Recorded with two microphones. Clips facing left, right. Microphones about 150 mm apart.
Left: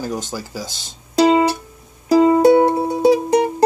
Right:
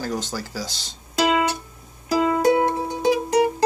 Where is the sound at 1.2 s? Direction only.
30° left (ahead or behind).